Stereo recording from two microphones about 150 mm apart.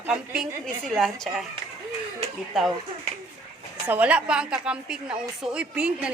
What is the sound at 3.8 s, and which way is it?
A woman's voice, 10° right (ahead or behind).